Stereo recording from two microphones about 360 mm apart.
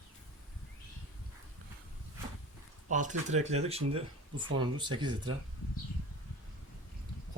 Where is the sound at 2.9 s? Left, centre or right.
Right.